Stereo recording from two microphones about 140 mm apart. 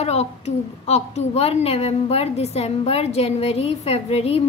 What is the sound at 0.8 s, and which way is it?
A woman's voice, 50° left (ahead or behind).